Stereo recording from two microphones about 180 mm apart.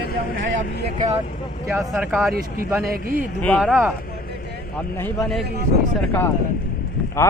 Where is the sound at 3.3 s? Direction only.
5° left (ahead or behind).